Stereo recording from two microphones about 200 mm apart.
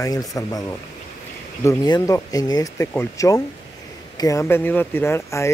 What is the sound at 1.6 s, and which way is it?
Speech, 15° left (ahead or behind).